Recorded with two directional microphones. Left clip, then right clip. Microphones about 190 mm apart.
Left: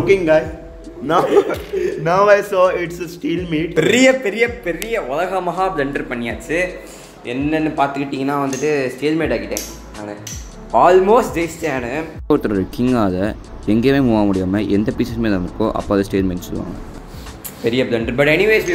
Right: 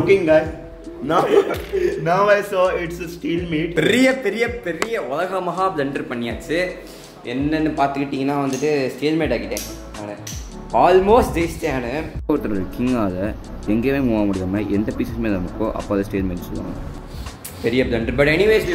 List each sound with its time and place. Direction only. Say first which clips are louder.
0.0 s a man's voice: left 1 dB; 10° left (ahead or behind)
3.7 s a man's voice: left 4 dB; centre (ahead or behind)
10.7 s speech: left 2 dB; 5° right (ahead or behind)
12.3 s a man's voice: left 5 dB; 25° left (ahead or behind)
17.6 s a man's voice: left 2 dB; centre (ahead or behind)